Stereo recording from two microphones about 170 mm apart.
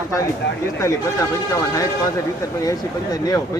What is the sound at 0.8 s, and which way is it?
Speech, 15° left (ahead or behind).